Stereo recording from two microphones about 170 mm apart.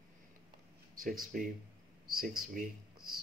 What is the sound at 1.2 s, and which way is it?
Speech, 55° right (ahead or behind).